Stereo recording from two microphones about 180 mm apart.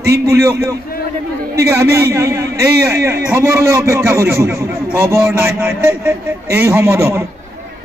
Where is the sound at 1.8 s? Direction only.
15° right (ahead or behind).